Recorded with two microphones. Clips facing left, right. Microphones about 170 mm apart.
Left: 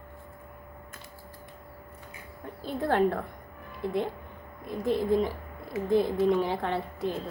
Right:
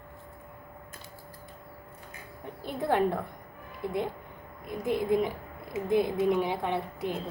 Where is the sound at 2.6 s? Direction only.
15° right (ahead or behind).